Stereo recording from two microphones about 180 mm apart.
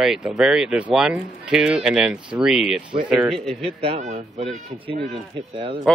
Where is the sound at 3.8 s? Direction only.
35° right (ahead or behind).